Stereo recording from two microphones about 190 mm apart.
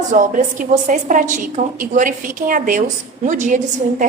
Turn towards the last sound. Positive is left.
turn(degrees=-40)  # may be behind; listen again after turning